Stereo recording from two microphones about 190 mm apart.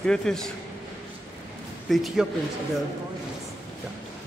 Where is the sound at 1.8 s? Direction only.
Centre (ahead or behind).